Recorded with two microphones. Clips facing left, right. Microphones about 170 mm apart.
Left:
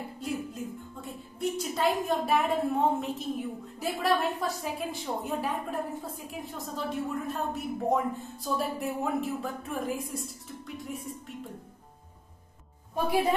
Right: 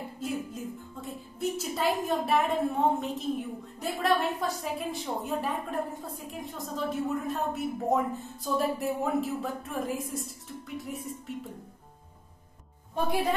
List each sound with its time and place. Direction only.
0.2 s a woman's voice: centre (ahead or behind)
12.9 s a woman's voice: 10° left (ahead or behind)